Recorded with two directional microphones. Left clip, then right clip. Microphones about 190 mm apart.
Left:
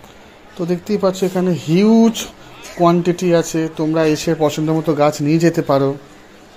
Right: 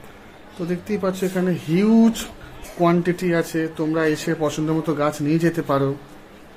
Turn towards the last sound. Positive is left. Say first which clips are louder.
# left 6 dB
turn(degrees=25)  # may be behind; listen again after turning